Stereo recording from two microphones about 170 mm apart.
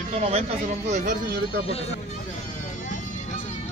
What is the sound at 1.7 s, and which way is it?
Speech, 35° left (ahead or behind).